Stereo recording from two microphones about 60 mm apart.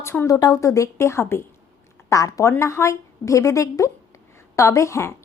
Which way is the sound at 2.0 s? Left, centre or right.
Left.